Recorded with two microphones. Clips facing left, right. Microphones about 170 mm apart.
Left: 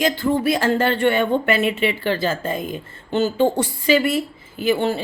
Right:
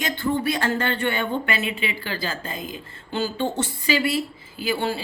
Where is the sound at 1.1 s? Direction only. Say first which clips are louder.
Left 7 dB; 50° left (ahead or behind).